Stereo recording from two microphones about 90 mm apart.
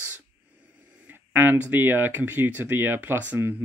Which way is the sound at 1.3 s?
20° right (ahead or behind).